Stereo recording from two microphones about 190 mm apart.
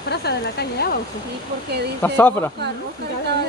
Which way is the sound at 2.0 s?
10° left (ahead or behind).